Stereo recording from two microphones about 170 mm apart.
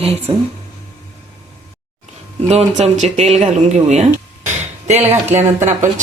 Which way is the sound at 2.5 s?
40° right (ahead or behind).